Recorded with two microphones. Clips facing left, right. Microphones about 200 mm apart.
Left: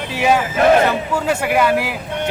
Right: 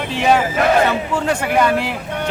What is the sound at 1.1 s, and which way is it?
Speech, 5° left (ahead or behind).